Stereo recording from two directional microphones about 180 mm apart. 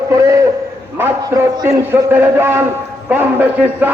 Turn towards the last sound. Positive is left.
turn(degrees=-10)  # may be behind; listen again after turning